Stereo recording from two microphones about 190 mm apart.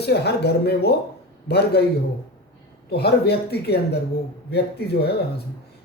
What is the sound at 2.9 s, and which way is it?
A man's voice, 60° left (ahead or behind).